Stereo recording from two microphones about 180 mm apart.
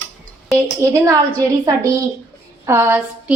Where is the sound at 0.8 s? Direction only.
15° right (ahead or behind).